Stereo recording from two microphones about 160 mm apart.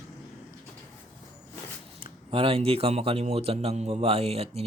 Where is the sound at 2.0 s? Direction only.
35° right (ahead or behind).